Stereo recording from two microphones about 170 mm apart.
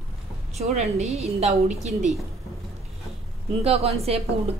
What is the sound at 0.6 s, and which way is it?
A woman's voice, 40° right (ahead or behind).